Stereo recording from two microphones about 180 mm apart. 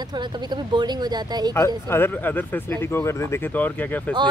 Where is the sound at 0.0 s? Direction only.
25° right (ahead or behind).